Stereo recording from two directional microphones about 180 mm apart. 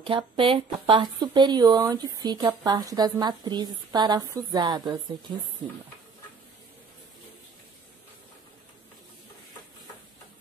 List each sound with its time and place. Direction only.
0.0 s speech: 30° right (ahead or behind)